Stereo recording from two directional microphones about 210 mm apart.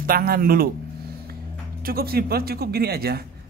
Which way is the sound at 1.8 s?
45° right (ahead or behind).